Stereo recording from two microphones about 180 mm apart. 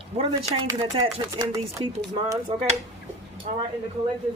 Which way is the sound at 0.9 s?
25° right (ahead or behind).